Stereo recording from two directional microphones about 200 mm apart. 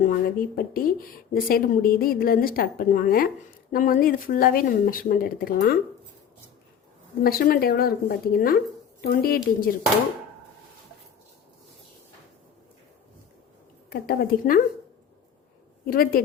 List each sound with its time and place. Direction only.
0.0 s speech: 45° left (ahead or behind)
7.3 s speech: 50° left (ahead or behind)
13.9 s speech: 50° left (ahead or behind)
15.9 s speech: 45° left (ahead or behind)